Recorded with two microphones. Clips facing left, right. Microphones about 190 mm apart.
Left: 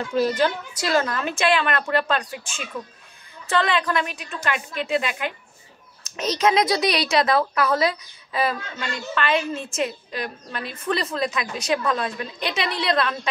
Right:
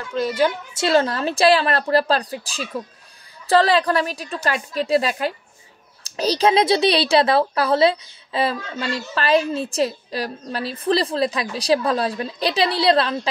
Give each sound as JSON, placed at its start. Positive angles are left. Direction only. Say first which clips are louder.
{"t": 0.7, "sound": "speech", "louder": "right 5 dB", "side_deg": -30}